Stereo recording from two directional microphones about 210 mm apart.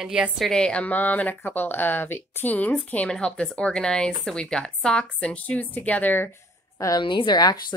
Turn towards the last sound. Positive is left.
turn(degrees=20)  # may be behind; listen again after turning